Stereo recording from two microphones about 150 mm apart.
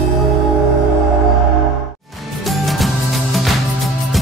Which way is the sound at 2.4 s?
Centre (ahead or behind).